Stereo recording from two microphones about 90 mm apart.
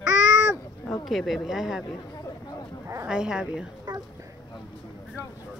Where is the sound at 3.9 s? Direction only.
50° right (ahead or behind).